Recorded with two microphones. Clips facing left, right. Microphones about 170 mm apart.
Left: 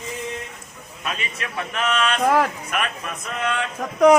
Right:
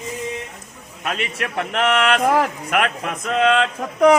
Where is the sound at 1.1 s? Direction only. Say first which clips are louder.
Right 5 dB; 75° right (ahead or behind).